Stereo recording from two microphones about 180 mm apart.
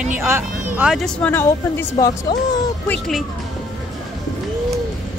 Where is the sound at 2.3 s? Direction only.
25° left (ahead or behind).